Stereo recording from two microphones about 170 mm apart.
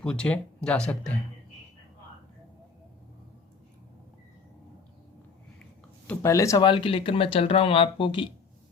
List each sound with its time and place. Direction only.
0.0 s speech: 5° left (ahead or behind)
6.1 s speech: 15° left (ahead or behind)